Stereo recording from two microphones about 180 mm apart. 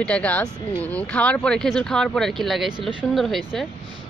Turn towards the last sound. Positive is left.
turn(degrees=0)  # may be behind; listen again after turning